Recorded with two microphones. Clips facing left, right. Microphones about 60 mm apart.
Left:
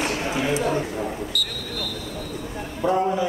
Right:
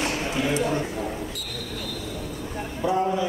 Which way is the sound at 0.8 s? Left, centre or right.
Centre.